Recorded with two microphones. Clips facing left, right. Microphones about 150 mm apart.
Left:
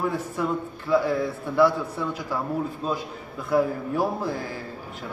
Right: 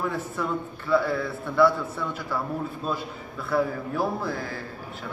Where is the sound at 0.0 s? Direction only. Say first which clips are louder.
Left 2 dB; 10° left (ahead or behind).